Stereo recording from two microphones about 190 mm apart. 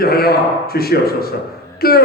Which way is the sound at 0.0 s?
55° left (ahead or behind).